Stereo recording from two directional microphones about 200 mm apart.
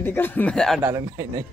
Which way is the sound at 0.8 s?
15° right (ahead or behind).